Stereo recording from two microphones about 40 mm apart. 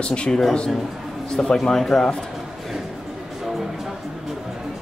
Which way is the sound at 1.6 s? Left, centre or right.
Centre.